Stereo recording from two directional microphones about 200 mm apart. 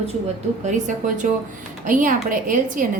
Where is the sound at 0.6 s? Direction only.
40° right (ahead or behind).